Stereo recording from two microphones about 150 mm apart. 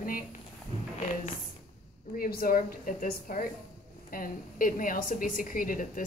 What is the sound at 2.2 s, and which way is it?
A woman's voice, 80° left.